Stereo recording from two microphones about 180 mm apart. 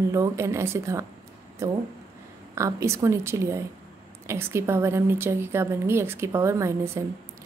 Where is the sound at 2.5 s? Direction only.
15° right (ahead or behind).